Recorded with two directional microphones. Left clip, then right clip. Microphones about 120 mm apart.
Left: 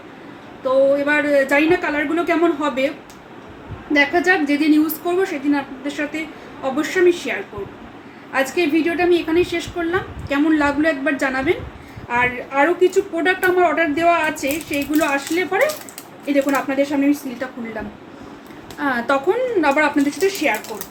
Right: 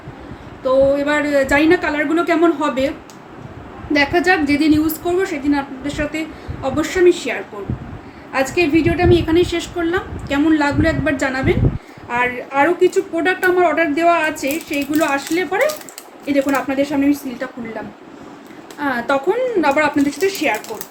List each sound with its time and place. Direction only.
0.6 s a woman's voice: 15° right (ahead or behind)
3.9 s a woman's voice: 10° right (ahead or behind); by 11.5 s 10° left (ahead or behind)
12.0 s a woman's voice: 5° right (ahead or behind)
18.8 s a woman's voice: 20° left (ahead or behind)
19.6 s a woman's voice: centre (ahead or behind); by 20.8 s 15° right (ahead or behind)